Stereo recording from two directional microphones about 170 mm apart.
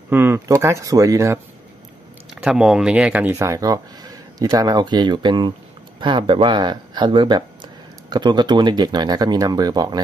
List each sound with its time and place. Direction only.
0.1 s speech: 15° right (ahead or behind)
2.4 s speech: 5° right (ahead or behind); by 9.9 s 25° right (ahead or behind)